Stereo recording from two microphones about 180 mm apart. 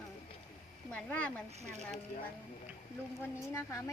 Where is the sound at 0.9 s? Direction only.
5° left (ahead or behind).